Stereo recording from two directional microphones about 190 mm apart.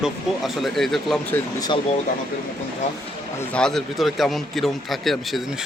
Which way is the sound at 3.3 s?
5° left (ahead or behind).